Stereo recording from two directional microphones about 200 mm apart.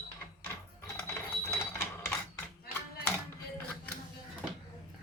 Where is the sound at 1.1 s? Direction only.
10° left (ahead or behind).